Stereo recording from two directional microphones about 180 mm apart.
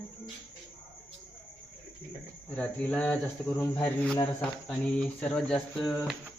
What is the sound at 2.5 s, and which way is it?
A man's voice, 5° left (ahead or behind).